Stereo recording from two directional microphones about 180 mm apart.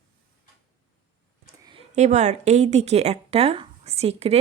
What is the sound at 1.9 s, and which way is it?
Speech, 40° right (ahead or behind).